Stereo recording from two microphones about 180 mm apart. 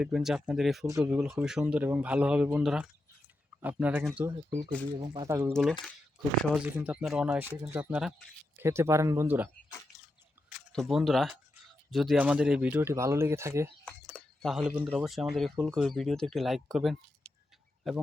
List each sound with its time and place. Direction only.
0.0 s speech: centre (ahead or behind)
0.9 s speech: 15° right (ahead or behind)
4.9 s speech: 25° right (ahead or behind)
5.6 s speech: 5° right (ahead or behind)
10.7 s speech: centre (ahead or behind); by 13.7 s 15° right (ahead or behind)
13.8 s speech: centre (ahead or behind)